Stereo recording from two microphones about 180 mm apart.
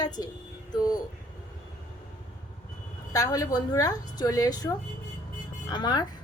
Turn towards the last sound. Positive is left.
turn(degrees=25)  # may be behind; listen again after turning